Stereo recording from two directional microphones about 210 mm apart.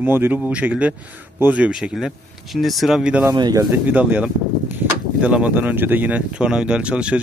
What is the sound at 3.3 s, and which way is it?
Speech, 20° right (ahead or behind).